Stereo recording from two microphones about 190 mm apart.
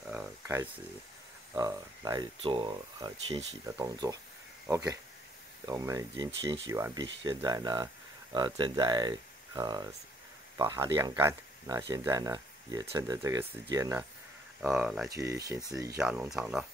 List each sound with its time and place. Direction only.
0.1 s a sound: 10° right (ahead or behind)
1.5 s speech: 20° right (ahead or behind)
14.6 s speech: centre (ahead or behind)
15.0 s speech: 15° right (ahead or behind)
16.0 s speech: 5° right (ahead or behind)